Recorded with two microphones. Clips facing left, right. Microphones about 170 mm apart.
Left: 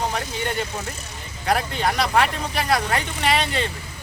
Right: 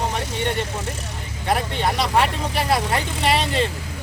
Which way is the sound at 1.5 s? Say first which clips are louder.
Right 1 dB; centre (ahead or behind).